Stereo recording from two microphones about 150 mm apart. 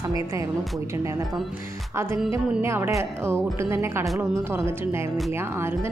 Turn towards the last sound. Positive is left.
turn(degrees=-15)  # may be behind; listen again after turning